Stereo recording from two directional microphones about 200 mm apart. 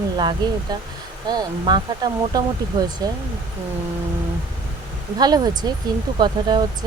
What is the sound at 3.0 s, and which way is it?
Speech, 20° right (ahead or behind).